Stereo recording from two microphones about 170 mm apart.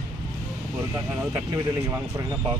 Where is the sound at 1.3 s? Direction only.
15° right (ahead or behind).